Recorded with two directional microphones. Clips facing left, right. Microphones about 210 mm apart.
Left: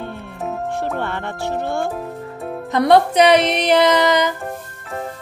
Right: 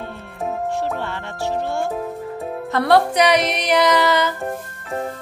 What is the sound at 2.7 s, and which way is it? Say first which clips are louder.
Music: left 3 dB; 20° left (ahead or behind).